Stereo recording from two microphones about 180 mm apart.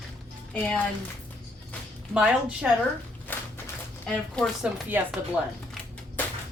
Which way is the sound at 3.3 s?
10° left (ahead or behind).